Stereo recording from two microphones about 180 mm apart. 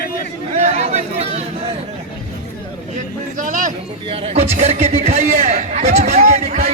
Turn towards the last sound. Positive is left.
turn(degrees=-40)  # may be behind; listen again after turning